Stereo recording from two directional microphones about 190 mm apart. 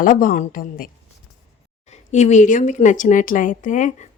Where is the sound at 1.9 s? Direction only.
35° left (ahead or behind).